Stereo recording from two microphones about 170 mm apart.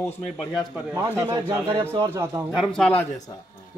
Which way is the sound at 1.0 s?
20° right (ahead or behind).